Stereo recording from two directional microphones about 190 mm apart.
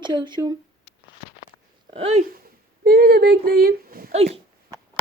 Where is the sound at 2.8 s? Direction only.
55° right (ahead or behind).